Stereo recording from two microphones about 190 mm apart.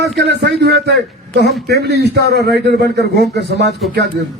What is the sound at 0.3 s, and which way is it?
A man's voice, 60° right (ahead or behind).